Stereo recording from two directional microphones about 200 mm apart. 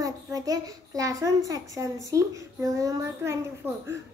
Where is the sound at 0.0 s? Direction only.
15° right (ahead or behind).